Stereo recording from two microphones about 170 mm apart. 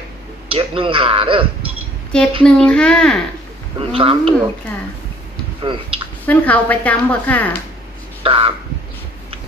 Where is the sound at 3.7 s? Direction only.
30° right (ahead or behind).